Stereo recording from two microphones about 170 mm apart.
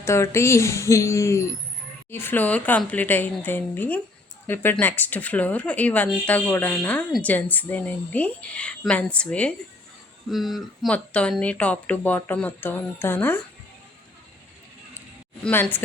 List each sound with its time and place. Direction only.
0.0 s speech: 15° left (ahead or behind)
15.4 s speech: 10° left (ahead or behind)